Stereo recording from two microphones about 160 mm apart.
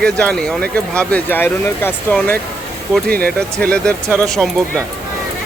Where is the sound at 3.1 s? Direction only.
70° right (ahead or behind).